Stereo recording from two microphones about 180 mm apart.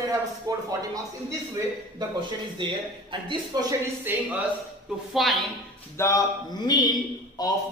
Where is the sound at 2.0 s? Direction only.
25° right (ahead or behind); by 5.3 s centre (ahead or behind).